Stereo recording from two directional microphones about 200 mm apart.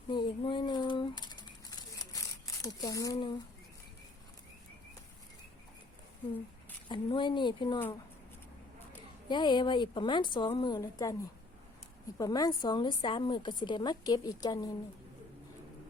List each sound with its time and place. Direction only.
0.1 s a sound: 25° left (ahead or behind)
6.8 s a woman's voice: 25° left (ahead or behind)
9.3 s a woman's voice: 20° left (ahead or behind)